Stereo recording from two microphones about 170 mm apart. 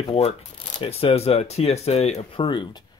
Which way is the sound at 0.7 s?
35° left (ahead or behind).